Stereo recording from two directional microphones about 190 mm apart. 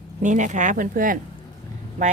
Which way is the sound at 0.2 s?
40° right (ahead or behind).